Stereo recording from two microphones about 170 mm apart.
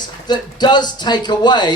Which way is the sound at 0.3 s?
25° left (ahead or behind).